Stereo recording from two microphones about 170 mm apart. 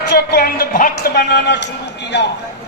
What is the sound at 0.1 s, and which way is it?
Music, 65° left (ahead or behind).